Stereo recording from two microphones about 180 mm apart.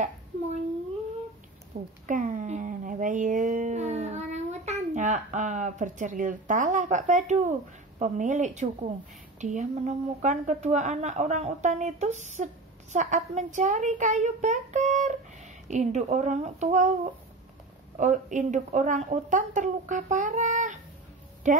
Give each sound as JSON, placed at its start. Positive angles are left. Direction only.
{"t": 1.7, "sound": "speech", "side_deg": -50}
{"t": 2.0, "sound": "a sound", "side_deg": -45}
{"t": 8.0, "sound": "a child's voice", "side_deg": -40}
{"t": 17.9, "sound": "a woman's voice", "side_deg": -45}